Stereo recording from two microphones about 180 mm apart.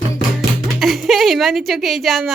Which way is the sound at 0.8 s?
Centre (ahead or behind).